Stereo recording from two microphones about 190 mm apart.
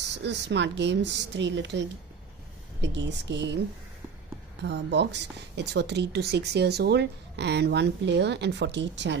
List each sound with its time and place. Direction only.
0.1 s speech: 65° right (ahead or behind)
4.6 s speech: 65° right (ahead or behind)